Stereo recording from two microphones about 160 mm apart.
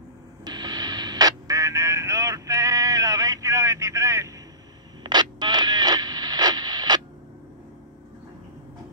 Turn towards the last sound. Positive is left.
turn(degrees=-25)  # may be behind; listen again after turning